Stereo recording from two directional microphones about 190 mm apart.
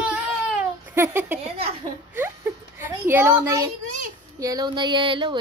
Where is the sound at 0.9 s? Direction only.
10° right (ahead or behind).